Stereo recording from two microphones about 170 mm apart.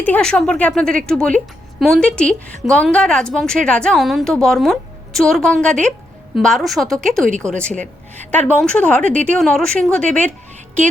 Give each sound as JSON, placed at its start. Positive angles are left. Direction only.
{"t": 0.0, "sound": "a woman's voice", "side_deg": 5}